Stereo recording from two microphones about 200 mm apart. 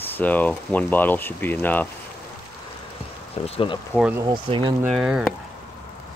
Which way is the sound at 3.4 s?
30° left (ahead or behind).